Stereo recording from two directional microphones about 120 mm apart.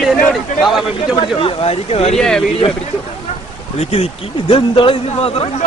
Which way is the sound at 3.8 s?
60° left (ahead or behind).